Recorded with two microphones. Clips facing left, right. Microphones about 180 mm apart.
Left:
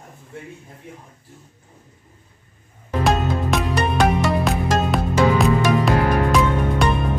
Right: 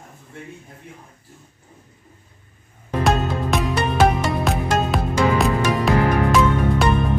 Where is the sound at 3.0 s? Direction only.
Centre (ahead or behind).